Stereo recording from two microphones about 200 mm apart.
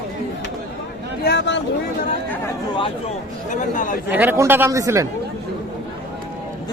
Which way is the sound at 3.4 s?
40° left (ahead or behind).